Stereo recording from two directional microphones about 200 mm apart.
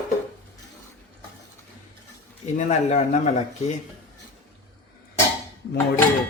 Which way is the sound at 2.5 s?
35° left (ahead or behind).